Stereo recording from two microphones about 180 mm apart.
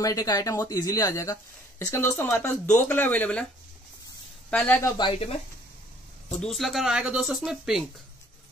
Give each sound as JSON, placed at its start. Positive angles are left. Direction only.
{"t": 0.0, "sound": "speech", "side_deg": 20}
{"t": 4.5, "sound": "speech", "side_deg": 10}
{"t": 4.9, "sound": "speech", "side_deg": 25}
{"t": 6.4, "sound": "speech", "side_deg": 0}